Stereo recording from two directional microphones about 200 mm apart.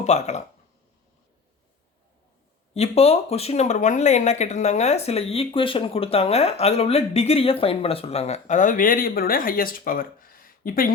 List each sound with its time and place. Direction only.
0.0 s speech: 35° left (ahead or behind)
2.7 s speech: 30° left (ahead or behind)